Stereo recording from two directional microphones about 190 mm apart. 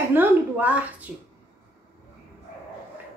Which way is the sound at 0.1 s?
10° right (ahead or behind).